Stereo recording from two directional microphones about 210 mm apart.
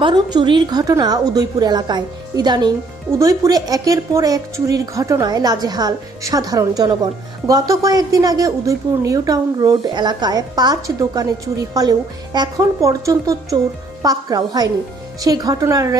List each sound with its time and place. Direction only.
0.0 s a woman's voice: 20° right (ahead or behind)